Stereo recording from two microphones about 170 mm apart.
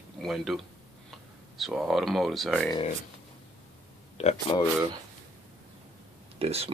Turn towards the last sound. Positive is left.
turn(degrees=-35)  # may be behind; listen again after turning